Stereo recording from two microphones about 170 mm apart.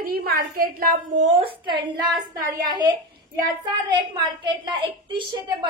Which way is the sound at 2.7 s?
25° right (ahead or behind).